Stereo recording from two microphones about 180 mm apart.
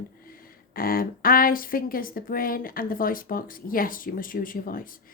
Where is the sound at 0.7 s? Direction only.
55° left (ahead or behind).